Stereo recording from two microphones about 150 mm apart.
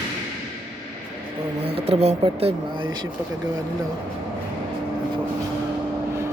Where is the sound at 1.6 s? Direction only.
40° right (ahead or behind).